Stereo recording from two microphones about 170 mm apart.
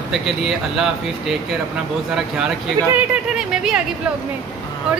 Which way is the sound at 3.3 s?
5° right (ahead or behind).